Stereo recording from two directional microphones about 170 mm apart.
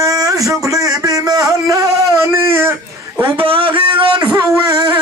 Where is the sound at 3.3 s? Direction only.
30° right (ahead or behind).